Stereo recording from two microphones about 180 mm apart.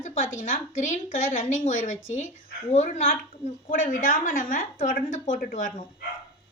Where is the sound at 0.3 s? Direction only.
45° left (ahead or behind).